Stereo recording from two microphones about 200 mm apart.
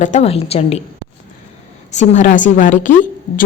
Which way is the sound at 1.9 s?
35° left (ahead or behind).